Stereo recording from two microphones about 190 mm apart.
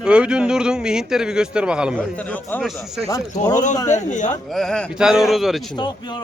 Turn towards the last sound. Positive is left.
turn(degrees=0)  # may be behind; listen again after turning